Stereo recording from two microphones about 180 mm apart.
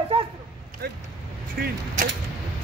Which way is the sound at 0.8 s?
60° right (ahead or behind).